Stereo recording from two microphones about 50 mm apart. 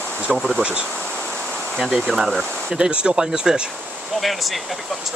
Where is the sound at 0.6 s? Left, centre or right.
Right.